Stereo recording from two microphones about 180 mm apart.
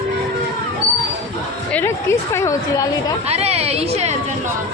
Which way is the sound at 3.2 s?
35° right (ahead or behind).